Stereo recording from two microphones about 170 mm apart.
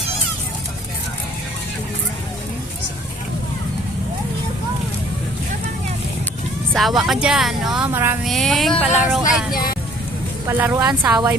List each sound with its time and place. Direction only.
6.7 s speech: centre (ahead or behind)
7.9 s a woman's voice: 10° right (ahead or behind)
8.2 s speech: centre (ahead or behind)
8.8 s a woman's voice: 10° right (ahead or behind)
9.5 s speech: 60° left (ahead or behind)
10.4 s a woman's voice: 15° right (ahead or behind)